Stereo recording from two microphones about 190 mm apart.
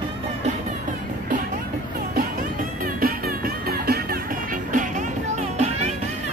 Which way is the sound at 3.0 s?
50° right (ahead or behind).